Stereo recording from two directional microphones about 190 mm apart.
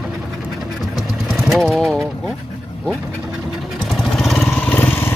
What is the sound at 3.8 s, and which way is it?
Motorcycle, centre (ahead or behind).